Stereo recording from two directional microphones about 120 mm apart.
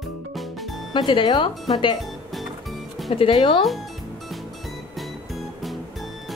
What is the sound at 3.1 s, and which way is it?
Speech, 50° left (ahead or behind).